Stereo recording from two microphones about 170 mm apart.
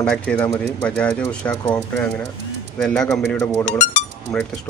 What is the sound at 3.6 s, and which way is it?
Speech, 45° left (ahead or behind).